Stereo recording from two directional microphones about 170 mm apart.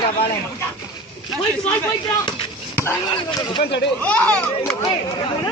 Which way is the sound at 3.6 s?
90° left.